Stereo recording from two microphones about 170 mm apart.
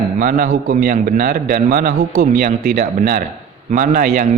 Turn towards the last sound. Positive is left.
turn(degrees=-55)  # may be behind; listen again after turning